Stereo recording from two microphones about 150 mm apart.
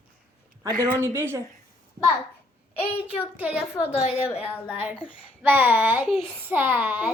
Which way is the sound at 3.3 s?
10° right (ahead or behind).